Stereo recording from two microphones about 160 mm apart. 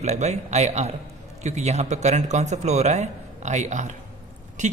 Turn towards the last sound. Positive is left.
turn(degrees=-50)  # may be behind; listen again after turning